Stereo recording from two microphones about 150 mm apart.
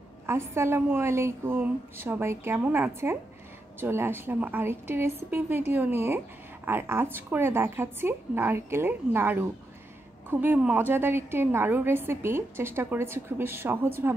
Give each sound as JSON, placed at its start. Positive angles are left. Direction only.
{"t": 0.3, "sound": "a woman's voice", "side_deg": -15}